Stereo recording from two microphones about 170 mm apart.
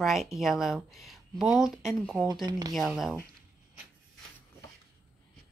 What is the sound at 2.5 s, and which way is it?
Speech, 25° right (ahead or behind).